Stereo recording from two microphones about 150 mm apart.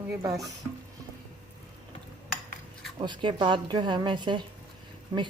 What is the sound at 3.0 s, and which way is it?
Speech, 30° right (ahead or behind).